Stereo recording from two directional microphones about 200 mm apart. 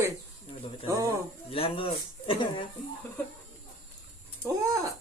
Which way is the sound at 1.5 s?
30° left (ahead or behind).